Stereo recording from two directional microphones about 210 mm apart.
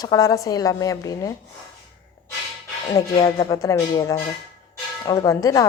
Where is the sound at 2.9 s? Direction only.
20° left (ahead or behind).